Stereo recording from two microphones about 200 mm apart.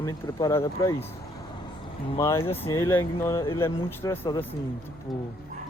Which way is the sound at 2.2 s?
10° left (ahead or behind).